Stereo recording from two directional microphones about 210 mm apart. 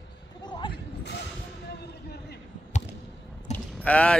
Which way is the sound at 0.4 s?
20° left (ahead or behind).